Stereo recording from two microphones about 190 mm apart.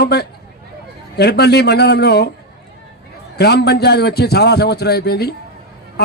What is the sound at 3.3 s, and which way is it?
A man's voice, 60° left (ahead or behind).